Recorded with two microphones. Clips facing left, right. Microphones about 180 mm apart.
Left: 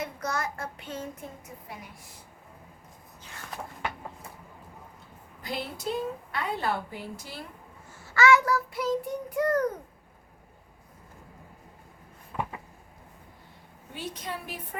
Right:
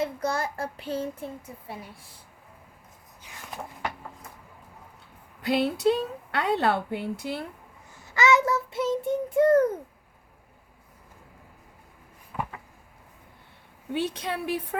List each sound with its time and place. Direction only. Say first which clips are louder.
0.0 s child singing: right 4 dB; 30° right (ahead or behind)
5.4 s a woman's voice: right 11 dB; 70° right (ahead or behind)
7.9 s child singing: left 1 dB; 20° right (ahead or behind)
13.9 s a woman's voice: right 8 dB; 70° right (ahead or behind)